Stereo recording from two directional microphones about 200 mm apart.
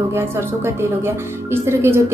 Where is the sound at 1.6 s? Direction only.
10° right (ahead or behind).